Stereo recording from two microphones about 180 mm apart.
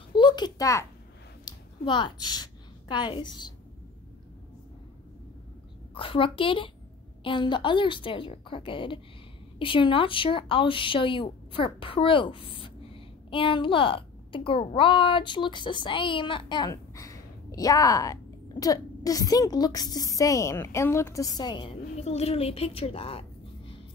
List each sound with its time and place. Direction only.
0.1 s a sound: 25° left (ahead or behind)
1.4 s a woman's voice: 25° left (ahead or behind)
5.9 s a woman's voice: 30° left (ahead or behind)